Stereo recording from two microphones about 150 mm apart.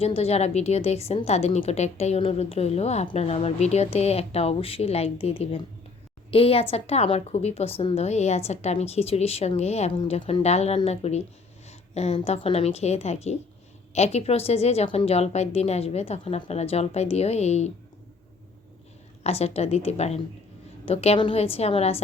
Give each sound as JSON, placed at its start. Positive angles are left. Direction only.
{"t": 0.0, "sound": "speech", "side_deg": 40}
{"t": 19.2, "sound": "speech", "side_deg": 45}